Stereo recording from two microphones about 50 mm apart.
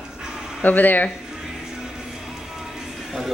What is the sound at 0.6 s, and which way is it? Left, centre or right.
Speech, left.